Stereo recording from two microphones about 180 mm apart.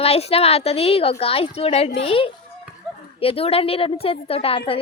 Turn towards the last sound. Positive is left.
turn(degrees=30)  # may be behind; listen again after turning